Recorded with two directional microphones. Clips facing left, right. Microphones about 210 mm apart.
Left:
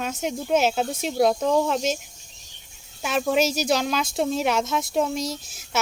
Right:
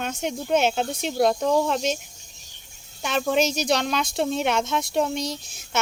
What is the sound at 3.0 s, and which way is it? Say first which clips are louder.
Speech: even; 5° left (ahead or behind).